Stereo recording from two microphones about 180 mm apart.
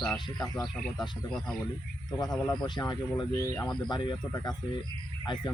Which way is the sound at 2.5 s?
25° left (ahead or behind).